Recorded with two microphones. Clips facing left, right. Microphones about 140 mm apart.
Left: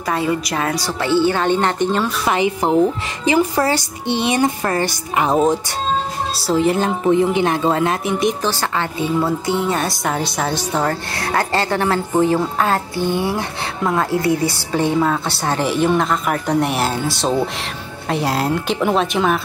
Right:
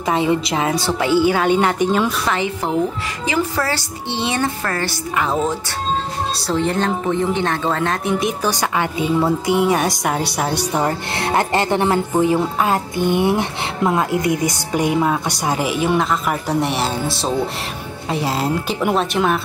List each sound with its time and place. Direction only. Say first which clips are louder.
0.1 s a woman's voice: right 2 dB; 20° right (ahead or behind)
1.0 s a woman's voice: even; 10° right (ahead or behind)
2.2 s speech: left 3 dB; 15° left (ahead or behind)
6.3 s speech: left 4 dB; 5° left (ahead or behind)
8.5 s a woman's voice: right 1 dB; 15° right (ahead or behind)